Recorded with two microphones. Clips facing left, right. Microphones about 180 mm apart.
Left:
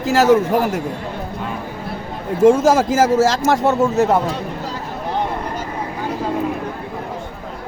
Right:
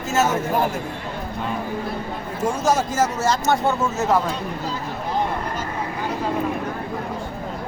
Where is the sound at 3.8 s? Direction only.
35° left (ahead or behind).